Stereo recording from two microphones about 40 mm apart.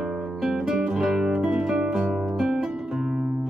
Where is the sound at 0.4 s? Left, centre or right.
Centre.